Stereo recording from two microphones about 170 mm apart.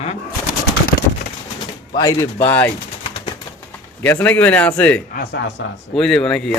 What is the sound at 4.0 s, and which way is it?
A man's voice, 10° left (ahead or behind).